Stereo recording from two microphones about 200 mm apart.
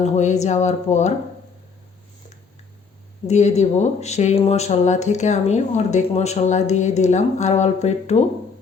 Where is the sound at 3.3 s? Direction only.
35° left (ahead or behind).